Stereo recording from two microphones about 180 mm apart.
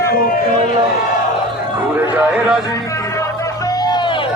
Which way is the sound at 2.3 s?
5° right (ahead or behind).